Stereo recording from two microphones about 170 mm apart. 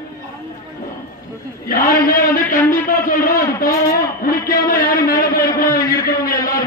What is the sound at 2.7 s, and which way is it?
A man's voice, 55° left (ahead or behind).